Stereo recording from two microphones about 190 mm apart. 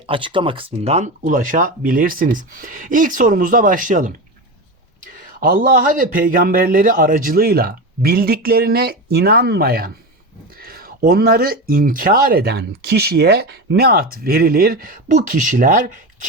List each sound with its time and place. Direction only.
0.1 s speech: 25° right (ahead or behind); by 4.2 s 45° right (ahead or behind)
5.4 s speech: 45° right (ahead or behind)